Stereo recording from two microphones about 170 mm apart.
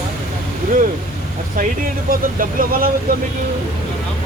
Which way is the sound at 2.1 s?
60° right (ahead or behind).